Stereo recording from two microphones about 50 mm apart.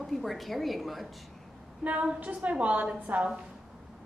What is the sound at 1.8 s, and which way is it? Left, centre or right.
A woman's voice, right.